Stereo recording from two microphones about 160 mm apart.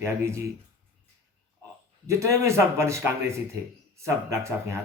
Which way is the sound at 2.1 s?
15° right (ahead or behind).